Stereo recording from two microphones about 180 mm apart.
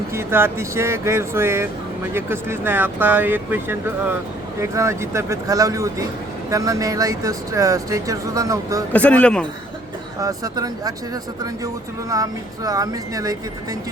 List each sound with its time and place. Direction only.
0.1 s speech: 15° right (ahead or behind)
8.9 s speech: 10° left (ahead or behind)
10.2 s speech: 20° right (ahead or behind)